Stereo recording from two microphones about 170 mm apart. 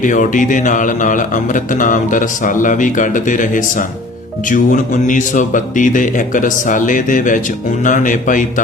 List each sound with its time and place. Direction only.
0.0 s a man's voice: 50° left (ahead or behind)